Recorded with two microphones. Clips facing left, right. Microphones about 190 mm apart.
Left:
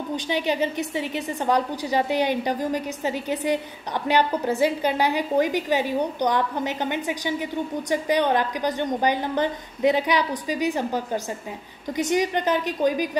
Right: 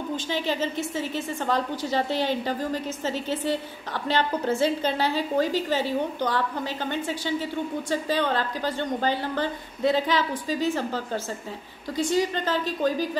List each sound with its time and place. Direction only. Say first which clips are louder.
0.1 s a woman's voice: left 4 dB; 15° left (ahead or behind)